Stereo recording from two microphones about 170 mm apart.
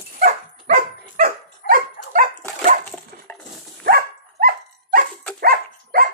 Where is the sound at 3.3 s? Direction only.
15° left (ahead or behind).